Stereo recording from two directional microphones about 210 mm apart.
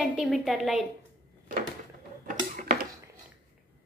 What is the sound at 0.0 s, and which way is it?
Speech, centre (ahead or behind).